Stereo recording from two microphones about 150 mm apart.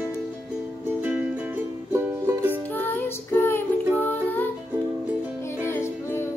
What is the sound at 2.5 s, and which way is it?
Music, 15° left (ahead or behind).